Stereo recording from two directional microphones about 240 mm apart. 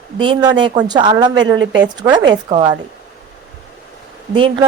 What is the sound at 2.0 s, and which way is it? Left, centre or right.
Speech, centre.